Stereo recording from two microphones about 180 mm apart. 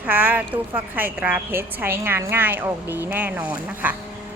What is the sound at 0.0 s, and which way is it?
A woman's voice, 10° right (ahead or behind).